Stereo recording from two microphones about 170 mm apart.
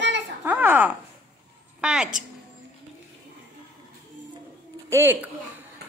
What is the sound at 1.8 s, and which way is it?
Speech, 5° right (ahead or behind).